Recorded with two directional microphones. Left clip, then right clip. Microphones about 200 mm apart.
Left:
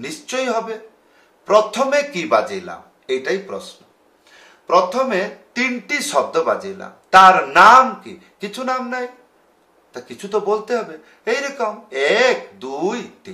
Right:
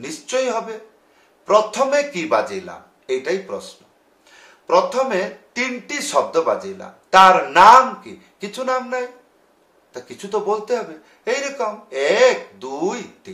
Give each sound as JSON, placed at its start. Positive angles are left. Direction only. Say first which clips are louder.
{"t": 0.0, "sound": "a man's voice", "louder": "right 1 dB", "side_deg": 10}